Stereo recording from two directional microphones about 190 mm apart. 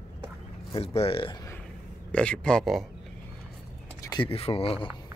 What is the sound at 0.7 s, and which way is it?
Speech, 30° left (ahead or behind).